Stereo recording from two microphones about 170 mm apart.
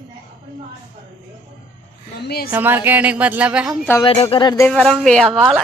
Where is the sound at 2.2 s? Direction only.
70° left (ahead or behind).